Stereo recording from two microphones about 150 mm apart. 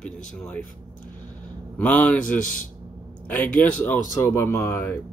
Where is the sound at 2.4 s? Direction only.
60° left (ahead or behind).